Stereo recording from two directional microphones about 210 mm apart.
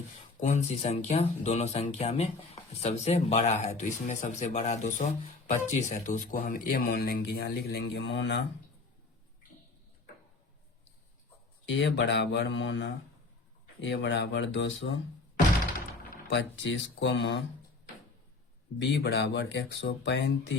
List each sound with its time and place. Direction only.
0.3 s speech: 35° left (ahead or behind); by 8.4 s 55° left (ahead or behind)
11.6 s speech: 60° left (ahead or behind)
16.3 s speech: 60° left (ahead or behind)
18.8 s speech: 55° left (ahead or behind)